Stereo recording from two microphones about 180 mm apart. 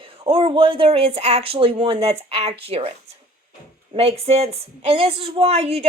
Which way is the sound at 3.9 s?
35° right (ahead or behind).